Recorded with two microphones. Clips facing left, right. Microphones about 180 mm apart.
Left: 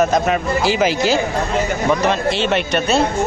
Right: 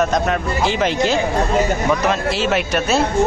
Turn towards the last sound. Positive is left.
turn(degrees=-5)  # may be behind; listen again after turning